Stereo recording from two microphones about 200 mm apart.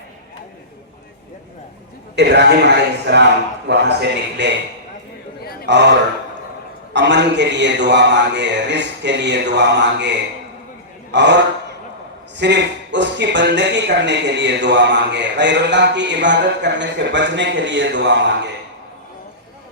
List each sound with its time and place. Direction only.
2.1 s speech: 60° right (ahead or behind)
5.4 s a sound: 50° left (ahead or behind)
5.6 s speech: 60° right (ahead or behind)